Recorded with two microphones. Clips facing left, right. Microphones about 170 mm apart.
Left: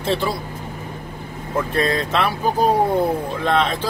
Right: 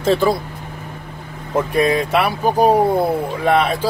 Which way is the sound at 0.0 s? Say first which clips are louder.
Right 6 dB; 40° right (ahead or behind).